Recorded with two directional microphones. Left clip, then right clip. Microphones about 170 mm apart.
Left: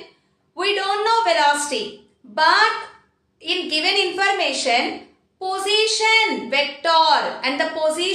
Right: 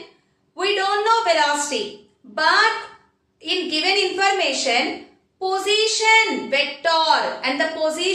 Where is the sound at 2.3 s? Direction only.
25° left (ahead or behind).